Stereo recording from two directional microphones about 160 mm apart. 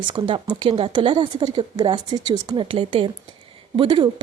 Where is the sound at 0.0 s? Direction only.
30° right (ahead or behind).